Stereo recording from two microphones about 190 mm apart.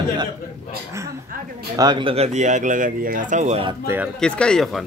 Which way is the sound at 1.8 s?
25° right (ahead or behind).